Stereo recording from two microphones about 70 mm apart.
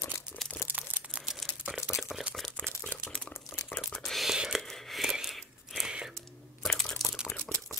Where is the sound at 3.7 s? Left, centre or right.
Left.